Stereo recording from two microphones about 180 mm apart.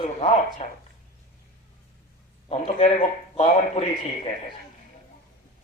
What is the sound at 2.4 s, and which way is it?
Speech, 35° left (ahead or behind).